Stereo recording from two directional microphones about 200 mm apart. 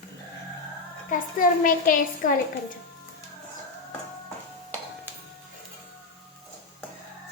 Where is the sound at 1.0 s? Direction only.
40° left (ahead or behind).